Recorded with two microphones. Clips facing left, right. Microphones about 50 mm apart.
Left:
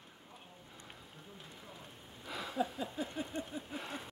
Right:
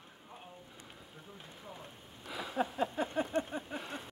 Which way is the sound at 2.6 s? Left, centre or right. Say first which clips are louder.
Right 4 dB; right.